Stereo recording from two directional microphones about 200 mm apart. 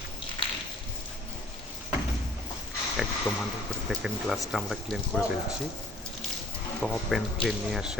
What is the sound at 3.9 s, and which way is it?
Speech, centre (ahead or behind).